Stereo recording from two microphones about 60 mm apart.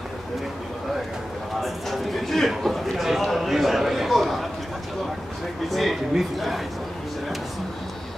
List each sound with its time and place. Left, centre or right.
1.6 s a man's voice: centre
5.7 s speech: centre